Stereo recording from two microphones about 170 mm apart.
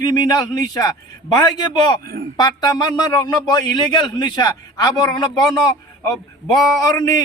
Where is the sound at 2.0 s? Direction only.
60° right (ahead or behind).